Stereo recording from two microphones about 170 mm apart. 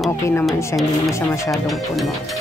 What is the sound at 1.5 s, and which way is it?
Speech, centre (ahead or behind).